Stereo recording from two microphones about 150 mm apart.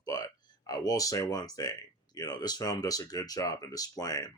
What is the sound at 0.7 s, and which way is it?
Speech, 25° left (ahead or behind).